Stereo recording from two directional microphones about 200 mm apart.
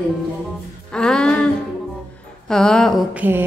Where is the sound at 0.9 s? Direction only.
5° left (ahead or behind).